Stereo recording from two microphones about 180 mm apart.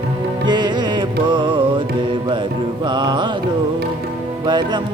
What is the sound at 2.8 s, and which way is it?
Music, 25° right (ahead or behind).